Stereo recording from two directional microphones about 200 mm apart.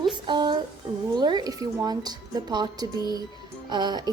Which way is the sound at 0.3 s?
25° right (ahead or behind).